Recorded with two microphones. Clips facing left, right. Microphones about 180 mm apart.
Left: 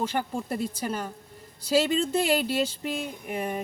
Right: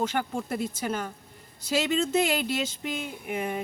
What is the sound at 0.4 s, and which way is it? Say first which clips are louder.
Speech: even; 35° left (ahead or behind).